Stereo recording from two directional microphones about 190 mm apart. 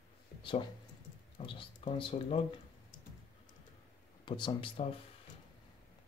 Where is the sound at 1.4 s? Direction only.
30° left (ahead or behind).